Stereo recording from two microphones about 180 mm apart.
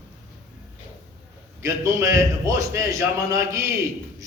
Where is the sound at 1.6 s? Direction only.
15° right (ahead or behind).